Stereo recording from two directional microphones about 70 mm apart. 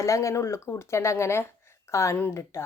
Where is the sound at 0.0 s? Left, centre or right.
Left.